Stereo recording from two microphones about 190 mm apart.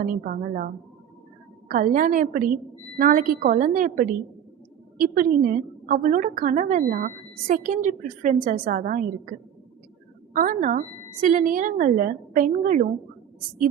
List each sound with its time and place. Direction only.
0.0 s a woman's voice: 45° right (ahead or behind)
10.3 s a woman's voice: 45° right (ahead or behind)